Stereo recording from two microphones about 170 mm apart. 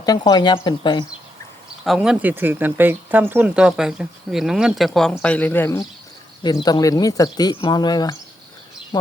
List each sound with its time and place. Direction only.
0.0 s speech: 25° left (ahead or behind)
1.8 s speech: centre (ahead or behind)
6.4 s speech: 25° left (ahead or behind)